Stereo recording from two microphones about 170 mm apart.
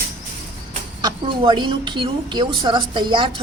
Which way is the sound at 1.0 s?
30° right (ahead or behind).